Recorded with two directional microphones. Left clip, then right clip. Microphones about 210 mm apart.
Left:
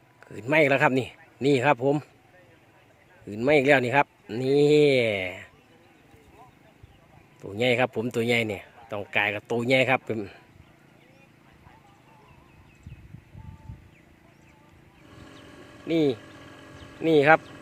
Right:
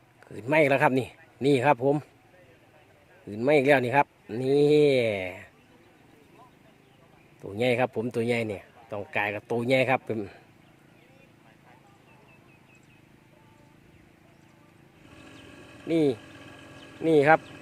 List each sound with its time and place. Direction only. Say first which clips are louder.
0.2 s speech: left 1 dB; 5° left (ahead or behind)
3.2 s speech: left 1 dB; 5° left (ahead or behind)
7.4 s speech: left 2 dB; 5° left (ahead or behind)
15.2 s vehicle: left 1 dB; 35° right (ahead or behind)
15.9 s speech: left 1 dB; centre (ahead or behind)
16.1 s vehicle: left 1 dB; 35° right (ahead or behind)
17.0 s speech: left 1 dB; 5° left (ahead or behind)